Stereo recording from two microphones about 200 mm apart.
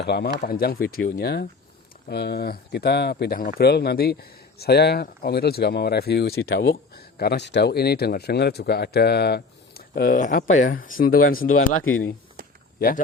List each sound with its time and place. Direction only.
0.0 s speech: 55° left (ahead or behind)
11.6 s speech: 90° left